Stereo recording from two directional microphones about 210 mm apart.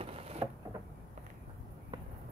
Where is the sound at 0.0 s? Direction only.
30° right (ahead or behind).